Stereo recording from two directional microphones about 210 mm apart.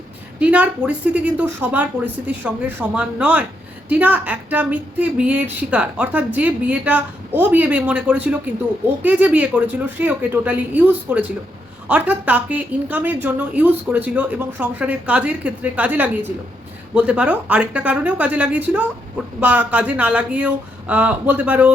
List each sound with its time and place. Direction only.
0.3 s speech: 5° right (ahead or behind)